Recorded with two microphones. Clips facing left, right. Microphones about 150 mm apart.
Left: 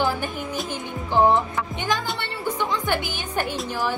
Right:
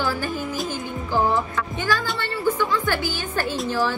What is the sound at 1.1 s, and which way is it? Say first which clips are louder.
A woman's voice: left 3 dB; 20° left (ahead or behind).